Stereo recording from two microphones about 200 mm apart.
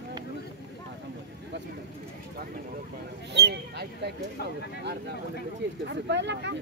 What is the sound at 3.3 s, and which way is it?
Speech, 55° right (ahead or behind).